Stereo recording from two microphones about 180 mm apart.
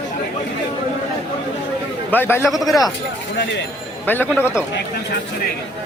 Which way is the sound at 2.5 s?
Centre (ahead or behind).